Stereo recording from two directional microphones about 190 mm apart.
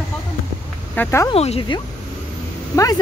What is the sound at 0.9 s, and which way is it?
Speech, 10° left (ahead or behind).